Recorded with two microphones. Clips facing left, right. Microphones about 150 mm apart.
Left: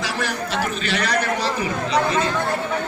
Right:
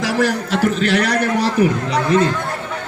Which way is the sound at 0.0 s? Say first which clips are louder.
Right 8 dB; 90° right.